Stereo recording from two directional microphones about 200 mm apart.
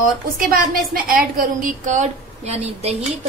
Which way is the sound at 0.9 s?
45° right (ahead or behind).